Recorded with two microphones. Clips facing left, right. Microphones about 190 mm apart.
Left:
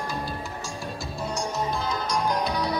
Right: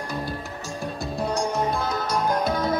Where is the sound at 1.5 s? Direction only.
55° right (ahead or behind).